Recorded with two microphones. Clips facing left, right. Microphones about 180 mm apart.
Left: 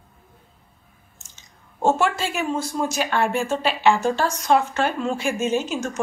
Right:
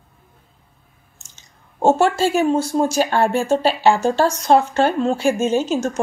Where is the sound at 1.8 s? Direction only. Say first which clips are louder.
Right 5 dB; 30° right (ahead or behind).